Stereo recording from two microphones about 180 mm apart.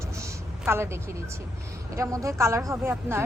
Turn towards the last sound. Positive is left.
turn(degrees=-15)  # may be behind; listen again after turning